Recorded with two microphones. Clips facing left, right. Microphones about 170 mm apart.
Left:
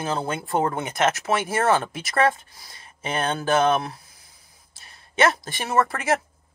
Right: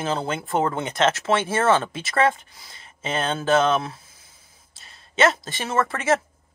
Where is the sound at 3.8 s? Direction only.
25° right (ahead or behind).